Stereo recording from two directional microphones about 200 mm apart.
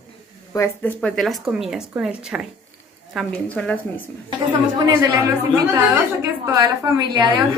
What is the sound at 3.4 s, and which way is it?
Speech, 5° left (ahead or behind).